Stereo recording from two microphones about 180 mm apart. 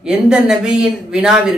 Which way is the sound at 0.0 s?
5° right (ahead or behind).